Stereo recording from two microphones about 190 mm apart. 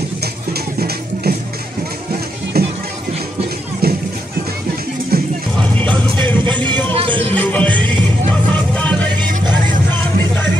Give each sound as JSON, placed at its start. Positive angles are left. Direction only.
{"t": 0.2, "sound": "music", "side_deg": -55}
{"t": 2.6, "sound": "music", "side_deg": -55}
{"t": 3.8, "sound": "music", "side_deg": -55}
{"t": 5.1, "sound": "music", "side_deg": -50}
{"t": 5.6, "sound": "music", "side_deg": 5}
{"t": 6.6, "sound": "vehicle", "side_deg": 10}
{"t": 6.9, "sound": "music", "side_deg": -30}
{"t": 7.3, "sound": "music", "side_deg": 10}